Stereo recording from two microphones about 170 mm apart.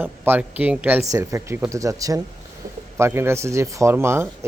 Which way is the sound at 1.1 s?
20° right (ahead or behind).